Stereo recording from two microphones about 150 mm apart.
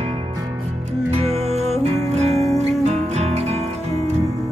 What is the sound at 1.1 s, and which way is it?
Music, 45° right (ahead or behind).